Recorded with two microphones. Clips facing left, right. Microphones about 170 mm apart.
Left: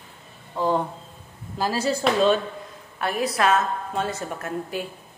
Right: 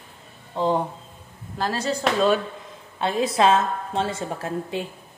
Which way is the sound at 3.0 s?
25° right (ahead or behind).